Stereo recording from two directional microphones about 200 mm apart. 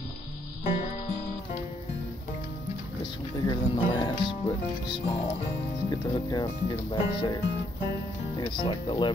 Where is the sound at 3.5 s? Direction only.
20° left (ahead or behind).